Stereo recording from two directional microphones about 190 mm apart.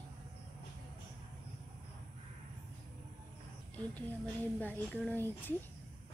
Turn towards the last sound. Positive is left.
turn(degrees=10)  # may be behind; listen again after turning